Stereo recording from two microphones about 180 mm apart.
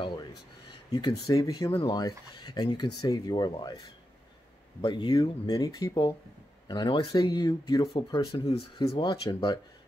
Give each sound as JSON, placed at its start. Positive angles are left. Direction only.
{"t": 1.2, "sound": "speech", "side_deg": 20}
{"t": 4.8, "sound": "speech", "side_deg": 25}